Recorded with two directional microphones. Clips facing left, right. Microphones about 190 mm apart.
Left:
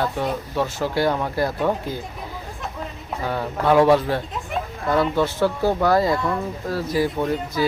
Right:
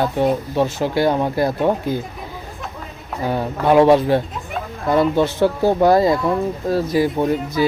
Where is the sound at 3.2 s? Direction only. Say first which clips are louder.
Right 4 dB; 15° right (ahead or behind).